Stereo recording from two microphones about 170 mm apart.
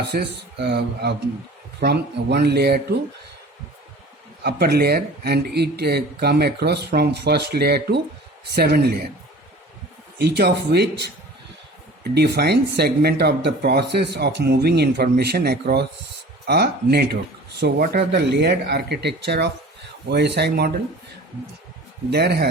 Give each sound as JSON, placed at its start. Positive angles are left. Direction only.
{"t": 0.0, "sound": "speech", "side_deg": -75}
{"t": 4.4, "sound": "speech", "side_deg": -70}
{"t": 10.2, "sound": "speech", "side_deg": -75}
{"t": 12.1, "sound": "speech", "side_deg": -75}
{"t": 22.1, "sound": "speech", "side_deg": -75}